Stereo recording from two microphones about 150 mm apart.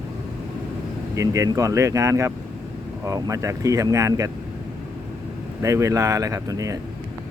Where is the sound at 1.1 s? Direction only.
20° right (ahead or behind).